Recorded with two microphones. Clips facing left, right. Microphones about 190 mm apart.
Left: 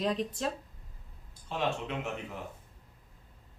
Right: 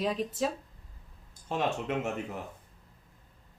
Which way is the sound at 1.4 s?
45° right (ahead or behind).